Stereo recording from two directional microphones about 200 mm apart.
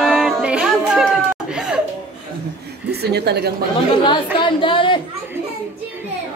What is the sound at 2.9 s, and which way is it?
Speech, 55° right (ahead or behind).